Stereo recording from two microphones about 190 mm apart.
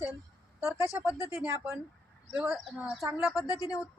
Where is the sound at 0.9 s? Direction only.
10° right (ahead or behind).